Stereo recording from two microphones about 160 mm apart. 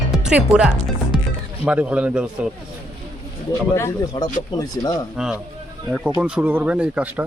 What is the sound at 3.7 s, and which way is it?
Speech, 15° left (ahead or behind).